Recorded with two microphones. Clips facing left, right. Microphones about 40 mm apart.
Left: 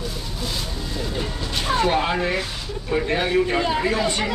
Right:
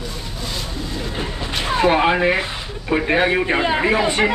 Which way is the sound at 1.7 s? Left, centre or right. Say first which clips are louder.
Right 5 dB; right.